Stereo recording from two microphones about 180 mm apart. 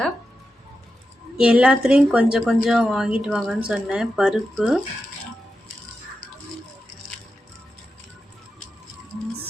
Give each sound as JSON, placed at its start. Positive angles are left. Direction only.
{"t": 1.4, "sound": "a woman's voice", "side_deg": -5}